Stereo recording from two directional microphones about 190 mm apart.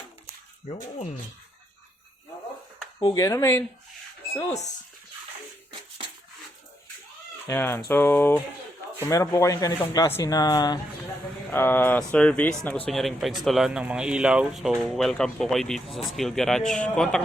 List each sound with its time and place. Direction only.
3.0 s speech: 20° left (ahead or behind)
4.4 s speech: 35° left (ahead or behind)
7.4 s a man's voice: 10° left (ahead or behind)